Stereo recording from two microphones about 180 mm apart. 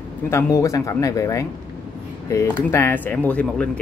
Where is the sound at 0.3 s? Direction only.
15° left (ahead or behind).